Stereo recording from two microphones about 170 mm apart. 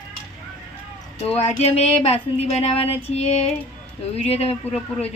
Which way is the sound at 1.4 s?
40° left (ahead or behind).